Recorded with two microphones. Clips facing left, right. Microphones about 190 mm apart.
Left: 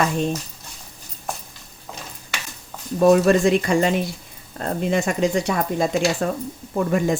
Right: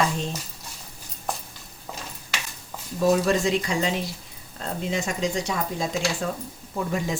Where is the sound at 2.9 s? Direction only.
60° left (ahead or behind).